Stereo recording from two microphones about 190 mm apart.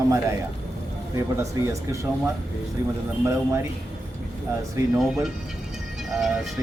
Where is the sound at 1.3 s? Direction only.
15° right (ahead or behind).